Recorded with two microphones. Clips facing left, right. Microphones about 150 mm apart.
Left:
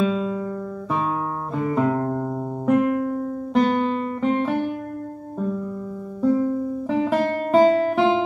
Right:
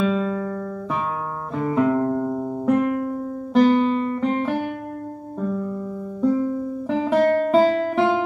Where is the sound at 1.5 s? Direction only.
5° left (ahead or behind).